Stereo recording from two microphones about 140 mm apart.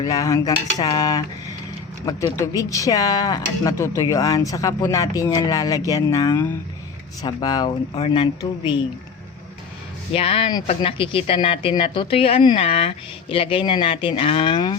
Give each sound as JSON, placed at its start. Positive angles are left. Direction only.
{"t": 0.0, "sound": "speech", "side_deg": 25}
{"t": 2.3, "sound": "speech", "side_deg": 20}
{"t": 7.9, "sound": "speech", "side_deg": 40}
{"t": 10.1, "sound": "speech", "side_deg": 45}